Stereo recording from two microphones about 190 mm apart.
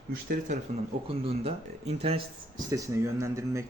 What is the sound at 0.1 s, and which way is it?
Speech, 55° right (ahead or behind).